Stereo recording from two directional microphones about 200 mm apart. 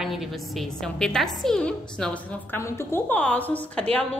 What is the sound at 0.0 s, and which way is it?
A woman's voice, centre (ahead or behind).